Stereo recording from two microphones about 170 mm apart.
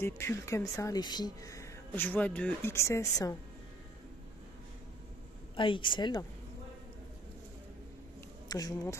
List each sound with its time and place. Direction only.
0.0 s speech: 15° left (ahead or behind)
5.6 s speech: 30° left (ahead or behind)
8.5 s speech: 20° left (ahead or behind)